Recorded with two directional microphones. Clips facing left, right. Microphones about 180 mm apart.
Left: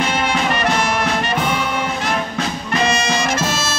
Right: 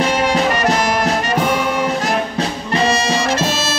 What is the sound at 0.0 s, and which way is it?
Brass instrument, 40° right (ahead or behind).